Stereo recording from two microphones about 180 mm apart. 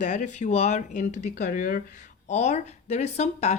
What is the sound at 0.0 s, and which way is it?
Speech, 40° left (ahead or behind).